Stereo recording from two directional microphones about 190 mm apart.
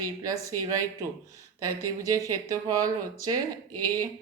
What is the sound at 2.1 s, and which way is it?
Speech, 15° right (ahead or behind).